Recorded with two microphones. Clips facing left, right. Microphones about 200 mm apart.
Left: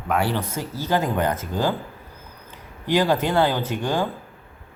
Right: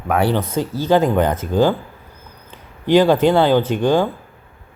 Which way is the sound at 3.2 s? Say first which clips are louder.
Right 7 dB; 25° right (ahead or behind).